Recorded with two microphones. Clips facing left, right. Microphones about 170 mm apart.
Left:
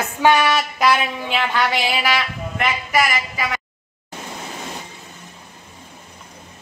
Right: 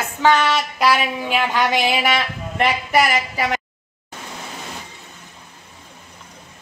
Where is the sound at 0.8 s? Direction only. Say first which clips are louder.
Right 1 dB; 10° right (ahead or behind); by 3.4 s 35° right (ahead or behind).